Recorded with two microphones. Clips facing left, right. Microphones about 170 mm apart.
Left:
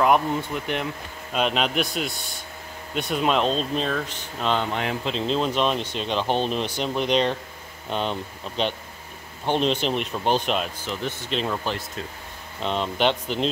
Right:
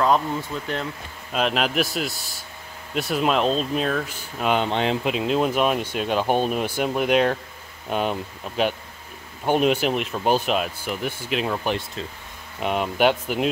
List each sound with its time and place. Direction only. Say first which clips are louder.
0.4 s speech: left 1 dB; 20° left (ahead or behind)
1.3 s speech: right 1 dB; centre (ahead or behind)
4.6 s speech: right 4 dB; 25° right (ahead or behind)
5.0 s speech: right 3 dB; 10° right (ahead or behind)